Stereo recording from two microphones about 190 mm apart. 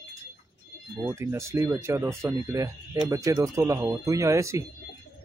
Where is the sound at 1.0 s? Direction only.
15° right (ahead or behind).